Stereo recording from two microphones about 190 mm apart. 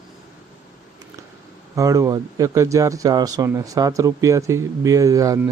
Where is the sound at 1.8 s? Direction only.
15° right (ahead or behind).